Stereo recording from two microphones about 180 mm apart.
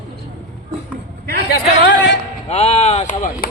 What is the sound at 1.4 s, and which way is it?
Speech, 90° left.